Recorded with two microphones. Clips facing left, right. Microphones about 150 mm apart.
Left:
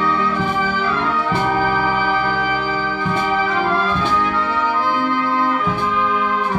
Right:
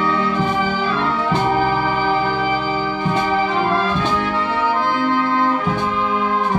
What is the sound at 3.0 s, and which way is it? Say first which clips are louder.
Music: right 1 dB; 30° right (ahead or behind).